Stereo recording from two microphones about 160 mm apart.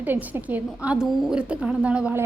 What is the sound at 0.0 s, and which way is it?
A woman's voice, 10° right (ahead or behind).